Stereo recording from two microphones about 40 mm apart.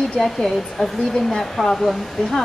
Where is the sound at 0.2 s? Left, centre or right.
Centre.